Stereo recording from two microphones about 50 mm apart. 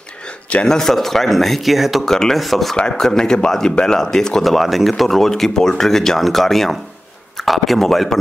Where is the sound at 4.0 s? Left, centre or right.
Centre.